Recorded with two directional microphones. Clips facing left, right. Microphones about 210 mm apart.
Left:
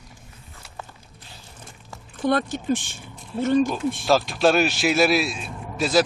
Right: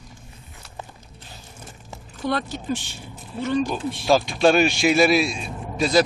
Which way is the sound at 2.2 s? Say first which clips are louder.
Left 3 dB; 50° left (ahead or behind).